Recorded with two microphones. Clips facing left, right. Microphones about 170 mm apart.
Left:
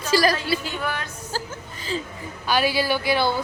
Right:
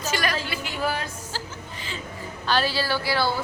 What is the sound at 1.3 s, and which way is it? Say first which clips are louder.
Music: left 6 dB; 45° left (ahead or behind).